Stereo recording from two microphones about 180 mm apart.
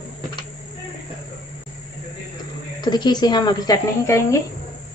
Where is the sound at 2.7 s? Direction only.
25° left (ahead or behind).